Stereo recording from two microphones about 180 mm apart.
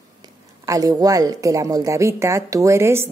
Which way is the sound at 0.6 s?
20° right (ahead or behind).